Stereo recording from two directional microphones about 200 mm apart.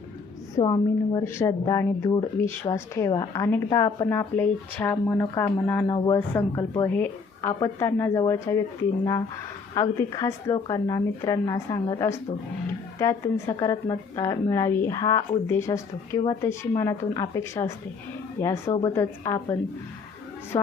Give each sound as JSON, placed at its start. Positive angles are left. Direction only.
{"t": 0.5, "sound": "a woman's voice", "side_deg": 20}